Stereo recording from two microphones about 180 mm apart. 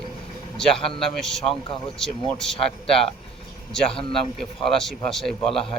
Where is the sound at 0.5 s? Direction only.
5° left (ahead or behind).